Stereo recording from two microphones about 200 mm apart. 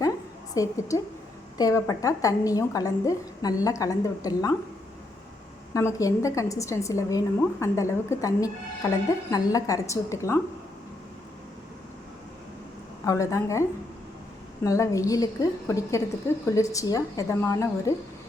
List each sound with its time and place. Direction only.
0.5 s a woman's voice: 15° left (ahead or behind)
5.7 s a woman's voice: 15° left (ahead or behind)
13.1 s a woman's voice: 15° left (ahead or behind)